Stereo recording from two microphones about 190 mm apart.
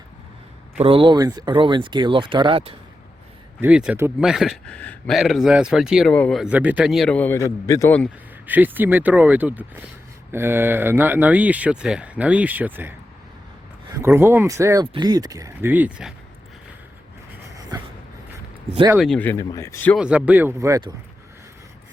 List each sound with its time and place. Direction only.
0.8 s speech: 30° right (ahead or behind)
3.6 s speech: 5° right (ahead or behind)
6.4 s speech: 5° right (ahead or behind); by 8.1 s 10° left (ahead or behind)
8.4 s speech: 10° right (ahead or behind)
13.9 s speech: 15° right (ahead or behind)
18.9 s speech: 5° left (ahead or behind)
20.0 s speech: 5° right (ahead or behind)